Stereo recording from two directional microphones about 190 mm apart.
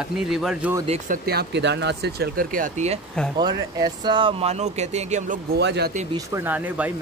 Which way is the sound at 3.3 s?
20° right (ahead or behind).